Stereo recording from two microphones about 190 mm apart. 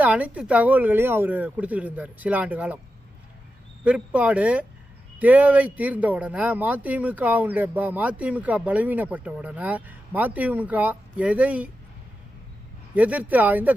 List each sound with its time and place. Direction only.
0.0 s speech: 10° right (ahead or behind)
3.8 s speech: 5° right (ahead or behind)
12.9 s speech: 10° right (ahead or behind)